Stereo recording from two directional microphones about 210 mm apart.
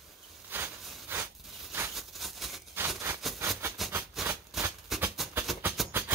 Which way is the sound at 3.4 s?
15° right (ahead or behind).